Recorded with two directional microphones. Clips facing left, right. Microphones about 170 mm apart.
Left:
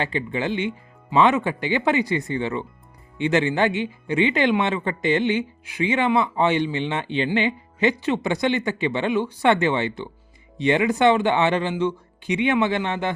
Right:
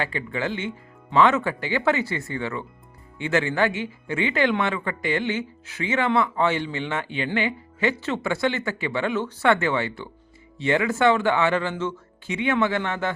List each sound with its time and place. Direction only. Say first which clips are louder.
0.0 s speech: left 2 dB; 20° left (ahead or behind)